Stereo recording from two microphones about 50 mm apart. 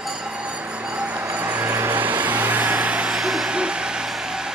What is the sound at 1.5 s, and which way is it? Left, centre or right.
Vehicle, right.